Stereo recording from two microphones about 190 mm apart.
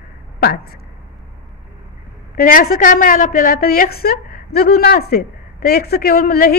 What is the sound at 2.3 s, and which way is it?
Speech, 45° left (ahead or behind).